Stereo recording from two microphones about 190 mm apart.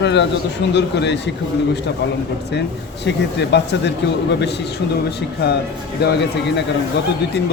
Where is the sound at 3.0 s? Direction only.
65° left (ahead or behind).